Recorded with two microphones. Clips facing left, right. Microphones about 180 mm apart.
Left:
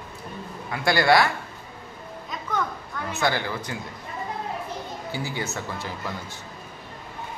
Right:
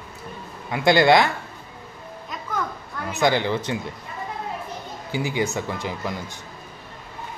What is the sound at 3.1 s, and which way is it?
Speech, 20° right (ahead or behind).